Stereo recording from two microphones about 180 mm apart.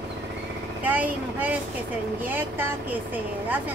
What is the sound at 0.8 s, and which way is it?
Speech, 10° right (ahead or behind).